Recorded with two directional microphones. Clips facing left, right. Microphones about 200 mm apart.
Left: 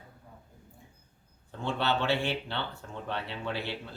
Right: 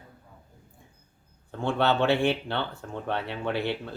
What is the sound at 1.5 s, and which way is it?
Speech, 55° right (ahead or behind).